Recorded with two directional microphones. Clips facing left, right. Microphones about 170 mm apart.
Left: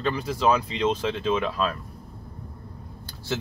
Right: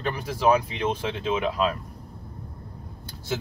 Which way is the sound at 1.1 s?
15° right (ahead or behind).